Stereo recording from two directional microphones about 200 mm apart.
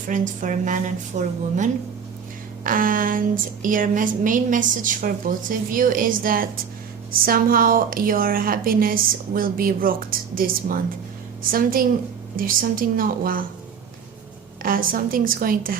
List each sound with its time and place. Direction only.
0.1 s a woman's voice: 40° right (ahead or behind)
14.6 s a woman's voice: 45° right (ahead or behind)